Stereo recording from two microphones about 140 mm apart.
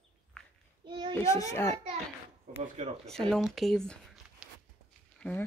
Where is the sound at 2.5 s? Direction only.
50° right (ahead or behind).